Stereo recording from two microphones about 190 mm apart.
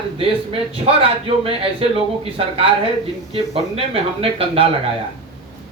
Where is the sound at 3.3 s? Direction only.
30° right (ahead or behind).